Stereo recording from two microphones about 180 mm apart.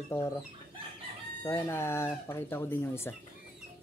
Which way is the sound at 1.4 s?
15° left (ahead or behind).